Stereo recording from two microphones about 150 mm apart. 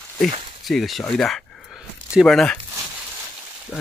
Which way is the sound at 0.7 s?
Centre (ahead or behind).